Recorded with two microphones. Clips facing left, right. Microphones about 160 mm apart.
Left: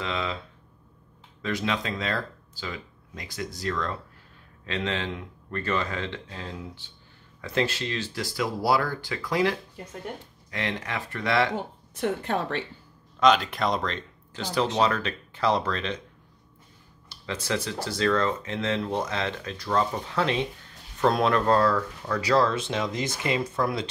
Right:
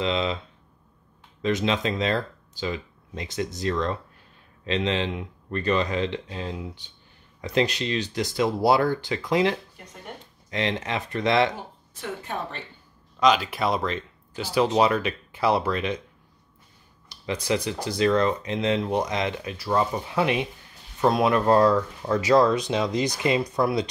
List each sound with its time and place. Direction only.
0.0 s speech: 20° right (ahead or behind)
1.4 s speech: 20° right (ahead or behind)
12.0 s a woman's voice: 85° left
13.2 s speech: centre (ahead or behind)
17.1 s speech: 15° right (ahead or behind)